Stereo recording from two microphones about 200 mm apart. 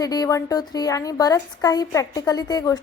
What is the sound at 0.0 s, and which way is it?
A woman's voice, 20° left (ahead or behind).